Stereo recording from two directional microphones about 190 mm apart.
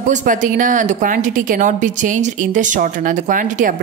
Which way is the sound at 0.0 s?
40° right (ahead or behind).